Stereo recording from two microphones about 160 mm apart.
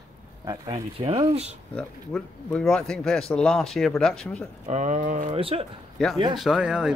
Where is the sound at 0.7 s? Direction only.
35° right (ahead or behind).